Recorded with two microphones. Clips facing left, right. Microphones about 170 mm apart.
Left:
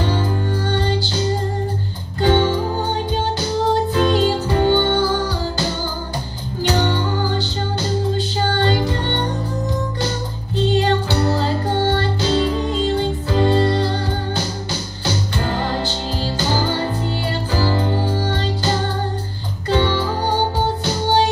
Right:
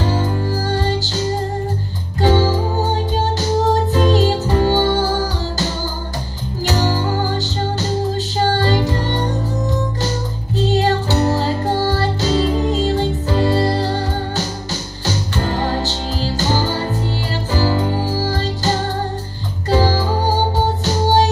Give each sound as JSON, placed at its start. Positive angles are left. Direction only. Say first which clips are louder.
{"t": 0.6, "sound": "music", "louder": "right 1 dB", "side_deg": -40}
{"t": 3.9, "sound": "music", "louder": "right 1 dB", "side_deg": -40}
{"t": 6.7, "sound": "music", "louder": "right 1 dB", "side_deg": -40}
{"t": 17.6, "sound": "music", "louder": "right 2 dB", "side_deg": -40}